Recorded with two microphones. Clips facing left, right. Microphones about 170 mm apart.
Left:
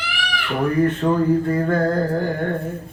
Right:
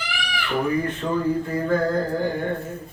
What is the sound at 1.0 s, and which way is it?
Mantra, 50° left (ahead or behind).